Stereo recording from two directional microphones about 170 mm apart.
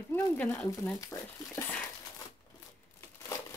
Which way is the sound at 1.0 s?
20° left (ahead or behind).